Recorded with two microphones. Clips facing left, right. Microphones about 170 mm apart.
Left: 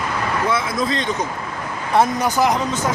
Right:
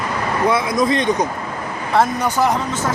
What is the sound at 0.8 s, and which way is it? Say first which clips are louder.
Speech: right 5 dB; 20° right (ahead or behind).